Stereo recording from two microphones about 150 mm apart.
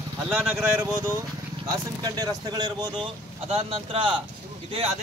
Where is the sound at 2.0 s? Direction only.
25° right (ahead or behind).